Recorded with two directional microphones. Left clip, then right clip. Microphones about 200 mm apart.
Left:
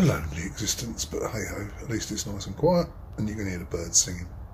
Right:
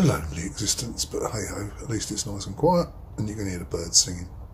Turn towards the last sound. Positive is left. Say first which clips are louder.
# right 3 dB
turn(degrees=-15)  # may be behind; listen again after turning